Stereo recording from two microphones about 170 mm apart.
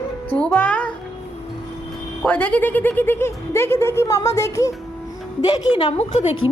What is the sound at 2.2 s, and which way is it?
A woman's voice, 10° left (ahead or behind).